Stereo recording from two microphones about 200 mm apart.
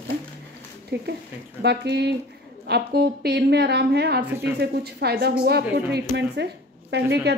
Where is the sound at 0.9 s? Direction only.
55° right (ahead or behind).